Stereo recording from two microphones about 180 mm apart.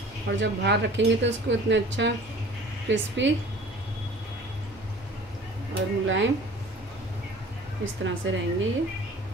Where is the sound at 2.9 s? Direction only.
75° right (ahead or behind).